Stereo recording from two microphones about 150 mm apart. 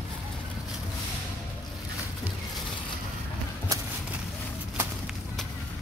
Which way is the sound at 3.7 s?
25° right (ahead or behind).